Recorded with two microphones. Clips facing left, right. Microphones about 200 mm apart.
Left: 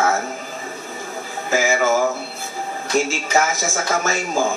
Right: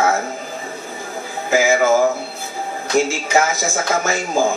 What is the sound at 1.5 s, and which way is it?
Speech, 15° right (ahead or behind).